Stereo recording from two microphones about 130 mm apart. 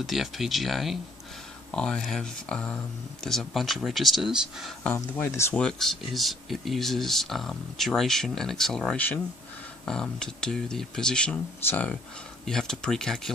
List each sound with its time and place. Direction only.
0.0 s speech: centre (ahead or behind)
4.9 s speech: 20° left (ahead or behind)
5.6 s speech: 5° left (ahead or behind)